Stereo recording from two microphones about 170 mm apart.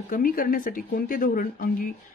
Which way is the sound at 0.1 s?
55° left (ahead or behind).